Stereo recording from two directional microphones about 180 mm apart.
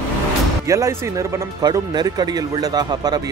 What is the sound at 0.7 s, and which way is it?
Speech, 15° right (ahead or behind).